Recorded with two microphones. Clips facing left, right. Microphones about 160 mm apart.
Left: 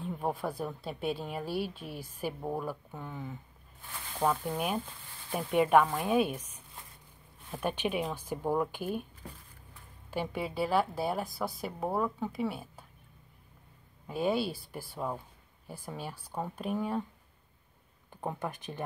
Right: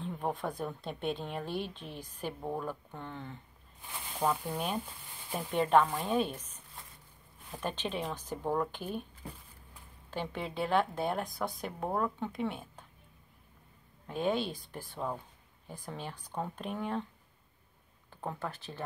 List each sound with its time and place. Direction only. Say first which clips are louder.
0.0 s a woman's voice: left 2 dB; 5° left (ahead or behind)
10.1 s a woman's voice: left 3 dB; 10° left (ahead or behind)
14.0 s a woman's voice: left 2 dB; 10° left (ahead or behind)
18.1 s speech: left 2 dB; 15° left (ahead or behind)